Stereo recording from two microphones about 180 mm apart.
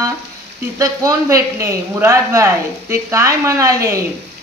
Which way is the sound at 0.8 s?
20° right (ahead or behind).